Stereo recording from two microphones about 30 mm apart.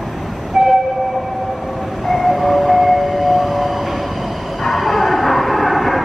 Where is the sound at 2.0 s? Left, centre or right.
Centre.